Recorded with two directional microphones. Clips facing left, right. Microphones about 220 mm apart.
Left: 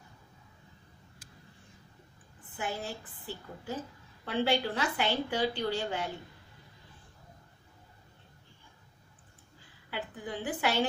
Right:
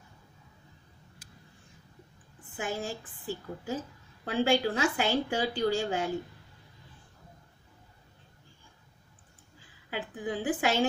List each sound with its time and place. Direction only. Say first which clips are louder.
2.5 s a woman's voice: right 3 dB; 45° right (ahead or behind)
9.8 s a woman's voice: right 4 dB; 45° right (ahead or behind)